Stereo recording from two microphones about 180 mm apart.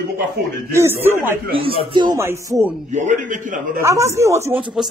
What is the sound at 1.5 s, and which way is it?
Speech, 30° right (ahead or behind).